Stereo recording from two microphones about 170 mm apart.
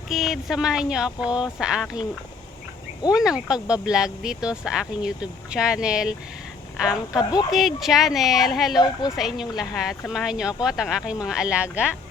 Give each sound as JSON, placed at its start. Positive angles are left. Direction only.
{"t": 0.1, "sound": "speech", "side_deg": 0}
{"t": 3.1, "sound": "speech", "side_deg": -5}
{"t": 7.2, "sound": "speech", "side_deg": 25}
{"t": 7.5, "sound": "speech", "side_deg": 0}